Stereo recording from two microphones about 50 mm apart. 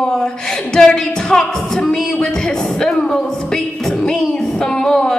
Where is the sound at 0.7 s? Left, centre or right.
Centre.